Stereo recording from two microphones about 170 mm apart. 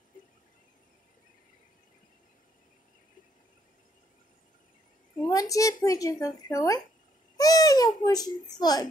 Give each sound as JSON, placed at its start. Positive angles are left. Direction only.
{"t": 5.2, "sound": "speech", "side_deg": 20}
{"t": 7.3, "sound": "babbling", "side_deg": 20}
{"t": 8.0, "sound": "speech", "side_deg": 20}